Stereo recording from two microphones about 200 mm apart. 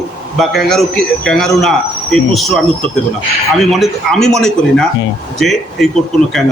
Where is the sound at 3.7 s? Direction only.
Centre (ahead or behind).